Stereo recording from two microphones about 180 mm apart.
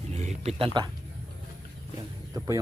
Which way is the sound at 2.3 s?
15° right (ahead or behind).